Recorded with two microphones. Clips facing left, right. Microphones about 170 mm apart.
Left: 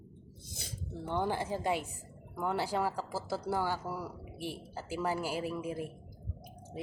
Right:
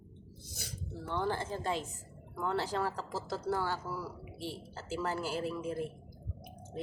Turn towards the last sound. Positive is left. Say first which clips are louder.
# right 1 dB
turn(degrees=10)  # may be behind; listen again after turning